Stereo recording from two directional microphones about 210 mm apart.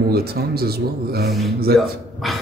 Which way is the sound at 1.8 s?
Centre (ahead or behind).